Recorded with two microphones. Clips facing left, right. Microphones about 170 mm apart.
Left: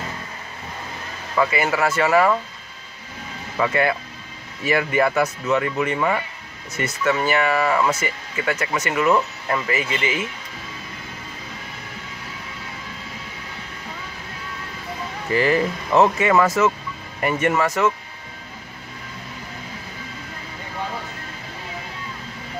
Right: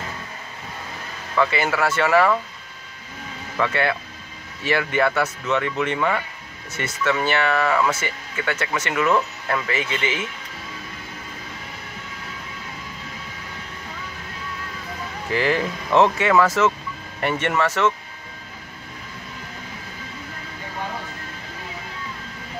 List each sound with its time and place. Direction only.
1.3 s speech: 5° left (ahead or behind)
3.5 s speech: 10° left (ahead or behind)
15.3 s speech: 5° left (ahead or behind)